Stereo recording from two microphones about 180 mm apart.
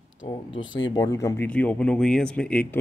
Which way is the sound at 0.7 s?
25° left (ahead or behind).